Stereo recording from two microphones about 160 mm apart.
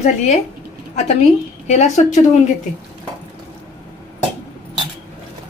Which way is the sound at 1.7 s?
45° left (ahead or behind).